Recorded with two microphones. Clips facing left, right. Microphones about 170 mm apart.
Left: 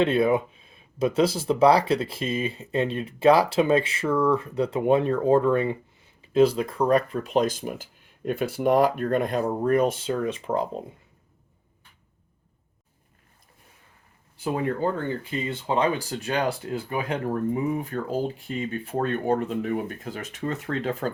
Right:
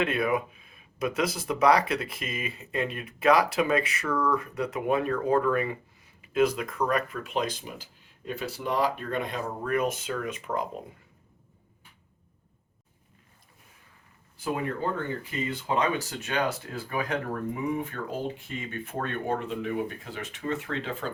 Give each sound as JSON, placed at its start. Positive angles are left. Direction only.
{"t": 0.0, "sound": "speech", "side_deg": 30}
{"t": 9.6, "sound": "speech", "side_deg": 35}
{"t": 14.4, "sound": "speech", "side_deg": 30}